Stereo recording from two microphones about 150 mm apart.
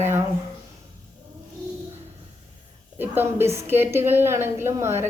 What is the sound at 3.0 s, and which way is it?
A woman's voice, 15° right (ahead or behind).